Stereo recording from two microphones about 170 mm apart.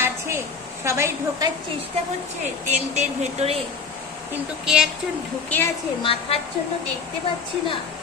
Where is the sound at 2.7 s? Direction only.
40° right (ahead or behind).